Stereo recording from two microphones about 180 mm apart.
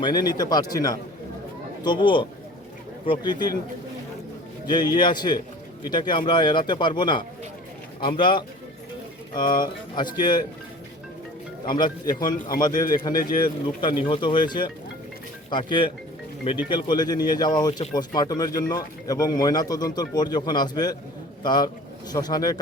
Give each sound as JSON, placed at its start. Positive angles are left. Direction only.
{"t": 0.0, "sound": "speech", "side_deg": 25}
{"t": 4.6, "sound": "speech", "side_deg": 25}
{"t": 11.7, "sound": "speech", "side_deg": 25}